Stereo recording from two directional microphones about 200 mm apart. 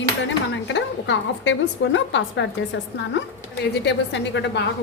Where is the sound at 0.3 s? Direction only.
65° left (ahead or behind).